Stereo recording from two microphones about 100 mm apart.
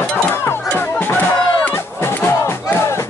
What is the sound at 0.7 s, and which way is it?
Music, 20° left (ahead or behind).